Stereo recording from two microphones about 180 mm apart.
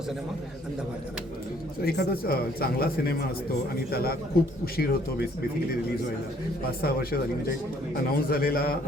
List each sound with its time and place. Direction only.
1.8 s speech: 55° left (ahead or behind)
6.8 s speech: 55° left (ahead or behind)